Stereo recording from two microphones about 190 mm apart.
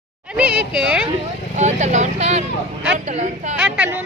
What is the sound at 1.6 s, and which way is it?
Speech, 40° right (ahead or behind).